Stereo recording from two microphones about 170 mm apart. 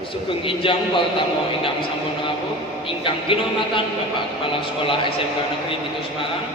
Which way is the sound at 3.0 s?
30° left (ahead or behind).